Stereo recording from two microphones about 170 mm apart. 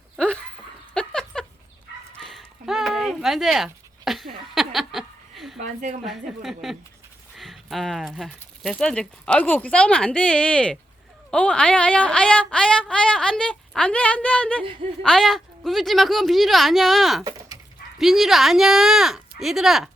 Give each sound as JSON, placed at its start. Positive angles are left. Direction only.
{"t": 0.9, "sound": "a sound", "side_deg": 5}
{"t": 2.2, "sound": "dog", "side_deg": 0}
{"t": 4.5, "sound": "chuckle", "side_deg": 0}
{"t": 5.5, "sound": "a woman's voice", "side_deg": -45}
{"t": 6.1, "sound": "speech", "side_deg": 0}